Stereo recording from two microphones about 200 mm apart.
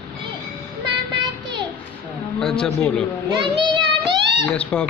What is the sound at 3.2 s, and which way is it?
Child singing, 25° right (ahead or behind).